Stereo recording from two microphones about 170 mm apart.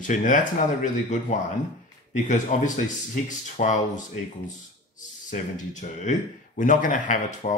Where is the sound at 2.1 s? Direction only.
45° left (ahead or behind).